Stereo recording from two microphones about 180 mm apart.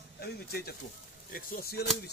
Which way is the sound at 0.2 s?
60° left (ahead or behind).